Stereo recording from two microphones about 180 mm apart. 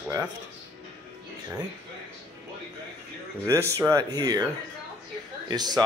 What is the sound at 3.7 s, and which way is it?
Speech, 15° right (ahead or behind).